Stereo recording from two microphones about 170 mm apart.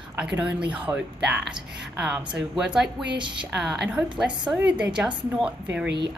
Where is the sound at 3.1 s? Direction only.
30° right (ahead or behind).